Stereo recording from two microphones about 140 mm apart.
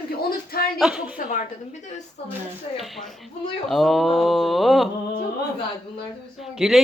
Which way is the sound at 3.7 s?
Centre (ahead or behind).